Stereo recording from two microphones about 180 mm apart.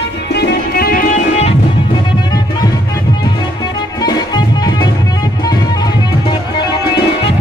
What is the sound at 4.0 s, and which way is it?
Music, 20° left (ahead or behind).